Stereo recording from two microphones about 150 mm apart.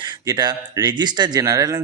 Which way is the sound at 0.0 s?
25° right (ahead or behind).